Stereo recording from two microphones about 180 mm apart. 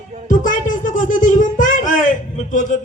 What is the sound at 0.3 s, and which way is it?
Speech, 45° left (ahead or behind).